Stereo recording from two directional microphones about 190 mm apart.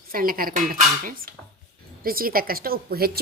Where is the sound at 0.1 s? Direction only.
50° right (ahead or behind).